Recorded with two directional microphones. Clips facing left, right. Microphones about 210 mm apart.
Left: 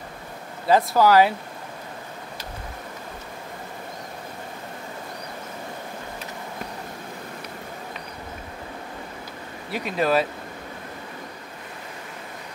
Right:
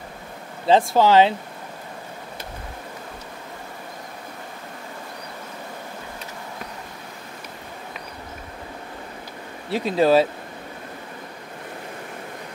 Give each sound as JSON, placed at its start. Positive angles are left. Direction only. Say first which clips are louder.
{"t": 0.7, "sound": "speech", "louder": "right 1 dB", "side_deg": -25}
{"t": 9.7, "sound": "speech", "louder": "right 5 dB", "side_deg": -30}